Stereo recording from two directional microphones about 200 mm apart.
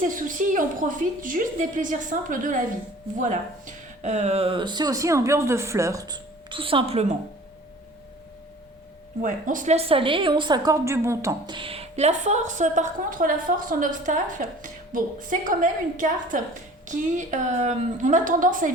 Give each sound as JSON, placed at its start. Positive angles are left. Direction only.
{"t": 0.0, "sound": "a woman's voice", "side_deg": -40}
{"t": 4.0, "sound": "speech", "side_deg": -35}
{"t": 9.2, "sound": "a woman's voice", "side_deg": -40}